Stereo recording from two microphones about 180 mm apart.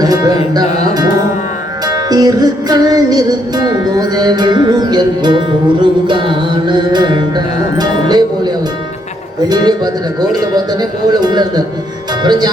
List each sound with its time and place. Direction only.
0.0 s music: 20° right (ahead or behind)
9.5 s speech: 20° right (ahead or behind)